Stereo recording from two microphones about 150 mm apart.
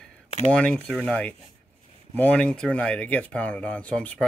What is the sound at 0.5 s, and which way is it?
Speech, 10° left (ahead or behind).